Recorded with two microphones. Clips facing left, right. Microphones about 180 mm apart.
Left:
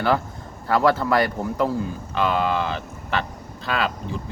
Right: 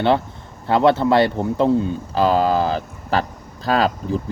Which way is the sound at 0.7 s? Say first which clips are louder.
Right 4 dB; 25° right (ahead or behind).